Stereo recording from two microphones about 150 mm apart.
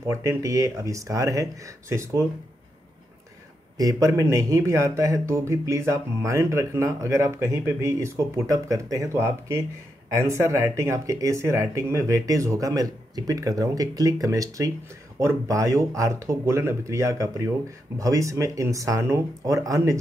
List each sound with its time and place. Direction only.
0.0 s speech: 15° right (ahead or behind)
3.7 s speech: 20° right (ahead or behind)